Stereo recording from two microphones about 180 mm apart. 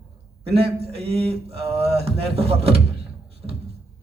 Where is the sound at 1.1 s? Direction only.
35° right (ahead or behind).